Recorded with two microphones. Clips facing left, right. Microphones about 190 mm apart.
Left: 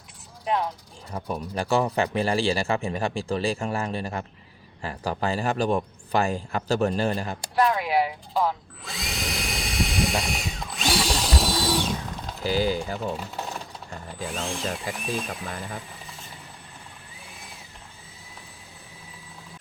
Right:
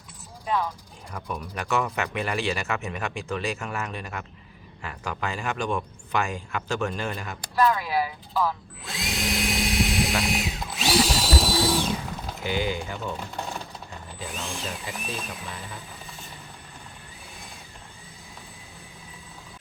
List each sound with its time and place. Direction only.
1.1 s speech: 30° left (ahead or behind)
7.6 s speech: 20° left (ahead or behind)
8.8 s drill: centre (ahead or behind)
12.4 s speech: 35° left (ahead or behind)
14.7 s speech: 50° left (ahead or behind)